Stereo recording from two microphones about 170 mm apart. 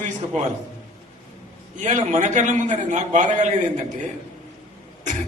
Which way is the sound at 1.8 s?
45° right (ahead or behind).